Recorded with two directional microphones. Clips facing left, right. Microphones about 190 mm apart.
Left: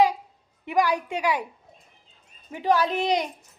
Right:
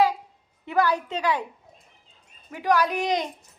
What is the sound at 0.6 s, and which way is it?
Speech, 15° left (ahead or behind).